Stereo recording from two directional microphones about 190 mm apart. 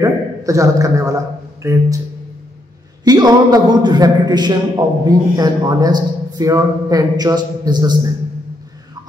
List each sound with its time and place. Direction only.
0.0 s a man's voice: 15° right (ahead or behind)
3.0 s a man's voice: 20° right (ahead or behind)